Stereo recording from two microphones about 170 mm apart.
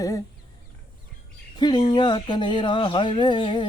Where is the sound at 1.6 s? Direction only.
25° left (ahead or behind).